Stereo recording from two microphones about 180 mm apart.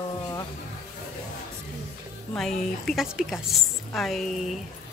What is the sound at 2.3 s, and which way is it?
A woman's voice, centre (ahead or behind).